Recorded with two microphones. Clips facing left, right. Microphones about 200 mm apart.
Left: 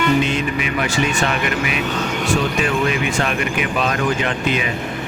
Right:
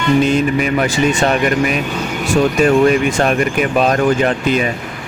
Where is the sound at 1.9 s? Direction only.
10° right (ahead or behind).